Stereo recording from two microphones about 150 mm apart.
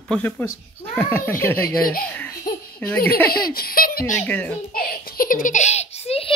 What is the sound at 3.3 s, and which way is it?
A child's voice, 80° left.